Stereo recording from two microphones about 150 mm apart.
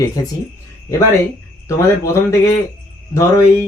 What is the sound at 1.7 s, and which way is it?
Speech, 20° left (ahead or behind).